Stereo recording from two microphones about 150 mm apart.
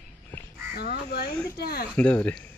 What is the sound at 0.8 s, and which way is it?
Crow, 90° left.